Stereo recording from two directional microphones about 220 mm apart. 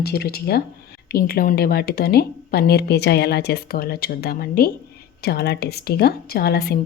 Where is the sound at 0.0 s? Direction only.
45° left (ahead or behind).